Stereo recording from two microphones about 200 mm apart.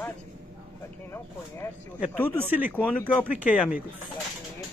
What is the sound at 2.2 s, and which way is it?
Speech, 10° right (ahead or behind).